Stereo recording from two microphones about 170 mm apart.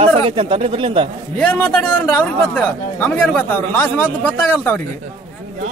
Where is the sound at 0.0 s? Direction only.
30° right (ahead or behind).